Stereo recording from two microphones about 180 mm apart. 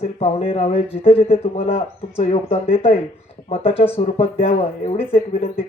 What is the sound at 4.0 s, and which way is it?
A man's voice, 35° left (ahead or behind).